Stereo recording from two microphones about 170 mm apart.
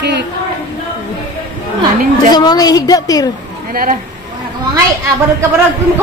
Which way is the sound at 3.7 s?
55° right (ahead or behind).